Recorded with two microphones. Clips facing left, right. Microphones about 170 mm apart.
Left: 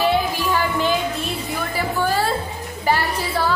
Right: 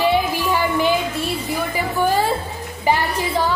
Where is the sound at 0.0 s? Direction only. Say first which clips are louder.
Right 1 dB; 15° right (ahead or behind).